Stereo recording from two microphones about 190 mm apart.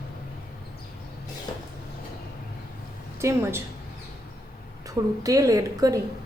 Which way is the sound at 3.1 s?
15° right (ahead or behind).